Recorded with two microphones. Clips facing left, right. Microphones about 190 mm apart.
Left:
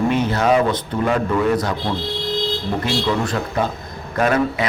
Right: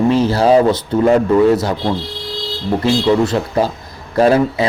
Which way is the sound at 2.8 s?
25° right (ahead or behind).